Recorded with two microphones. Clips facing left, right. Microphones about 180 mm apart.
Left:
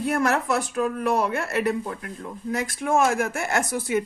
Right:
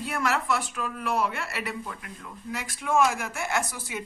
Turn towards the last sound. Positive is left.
turn(degrees=50)  # may be behind; listen again after turning